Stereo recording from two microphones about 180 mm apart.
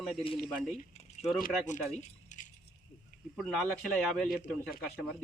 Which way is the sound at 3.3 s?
Centre (ahead or behind).